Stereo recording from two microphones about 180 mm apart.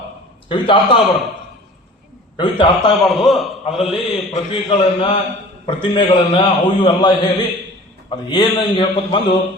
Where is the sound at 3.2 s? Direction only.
Centre (ahead or behind).